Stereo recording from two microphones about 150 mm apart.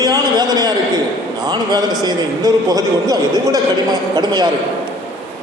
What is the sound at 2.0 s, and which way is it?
A man's voice, 25° right (ahead or behind).